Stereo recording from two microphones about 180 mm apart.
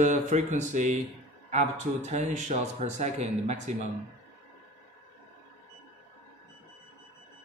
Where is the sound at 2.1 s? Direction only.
40° right (ahead or behind).